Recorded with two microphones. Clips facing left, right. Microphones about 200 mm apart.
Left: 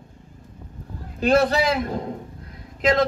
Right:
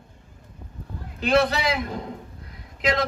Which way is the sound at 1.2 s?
45° left (ahead or behind).